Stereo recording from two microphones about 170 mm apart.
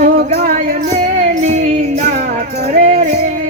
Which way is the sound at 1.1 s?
45° right (ahead or behind).